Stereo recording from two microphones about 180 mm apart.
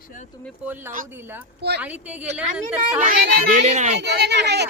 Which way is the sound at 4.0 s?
70° right (ahead or behind).